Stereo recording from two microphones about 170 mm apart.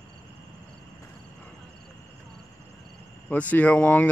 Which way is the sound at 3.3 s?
10° left (ahead or behind).